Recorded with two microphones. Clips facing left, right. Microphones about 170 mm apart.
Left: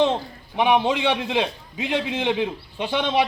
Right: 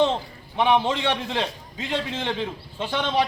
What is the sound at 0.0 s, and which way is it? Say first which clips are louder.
A man's voice: left 1 dB; 15° left (ahead or behind).